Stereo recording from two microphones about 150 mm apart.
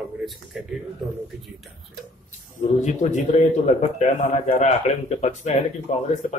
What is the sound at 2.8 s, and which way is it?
A man's voice, 50° left (ahead or behind).